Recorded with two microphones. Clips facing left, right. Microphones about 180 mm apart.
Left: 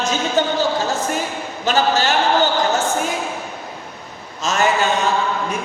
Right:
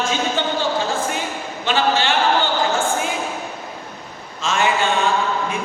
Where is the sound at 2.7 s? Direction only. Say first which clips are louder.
Left 1 dB; 40° left (ahead or behind).